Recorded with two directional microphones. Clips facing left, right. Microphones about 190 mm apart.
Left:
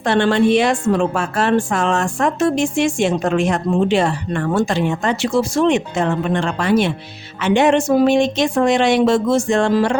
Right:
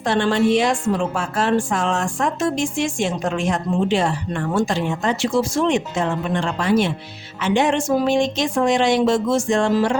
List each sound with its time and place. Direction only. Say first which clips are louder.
0.0 s a woman's voice: left 3 dB; 65° left (ahead or behind)